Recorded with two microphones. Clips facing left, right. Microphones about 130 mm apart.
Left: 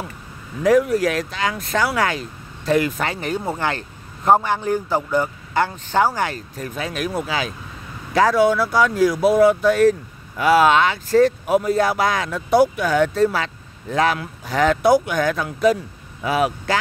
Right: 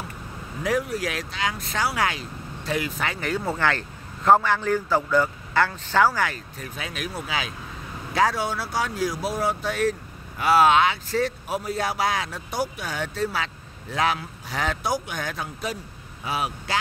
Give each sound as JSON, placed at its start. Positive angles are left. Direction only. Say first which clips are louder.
{"t": 0.7, "sound": "speech", "louder": "left 10 dB", "side_deg": 50}
{"t": 3.2, "sound": "a man's voice", "louder": "left 2 dB", "side_deg": 20}
{"t": 6.2, "sound": "speech", "louder": "left 4 dB", "side_deg": 35}